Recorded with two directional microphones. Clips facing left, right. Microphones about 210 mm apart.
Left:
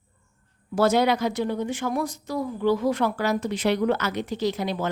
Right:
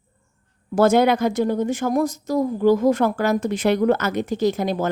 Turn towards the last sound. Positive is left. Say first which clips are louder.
# right 5 dB
turn(degrees=-45)  # may be behind; listen again after turning